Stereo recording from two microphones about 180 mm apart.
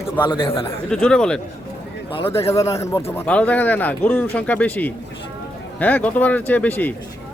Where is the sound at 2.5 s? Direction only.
15° left (ahead or behind).